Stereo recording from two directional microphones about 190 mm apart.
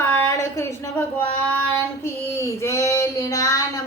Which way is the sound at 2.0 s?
15° left (ahead or behind).